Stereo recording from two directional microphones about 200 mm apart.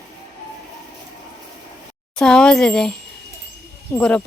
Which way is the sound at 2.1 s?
5° left (ahead or behind).